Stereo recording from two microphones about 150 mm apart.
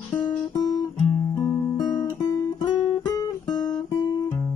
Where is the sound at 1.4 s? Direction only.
25° left (ahead or behind).